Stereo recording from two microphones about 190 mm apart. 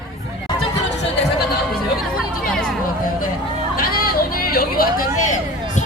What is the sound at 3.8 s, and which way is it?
Vehicle, 50° left (ahead or behind).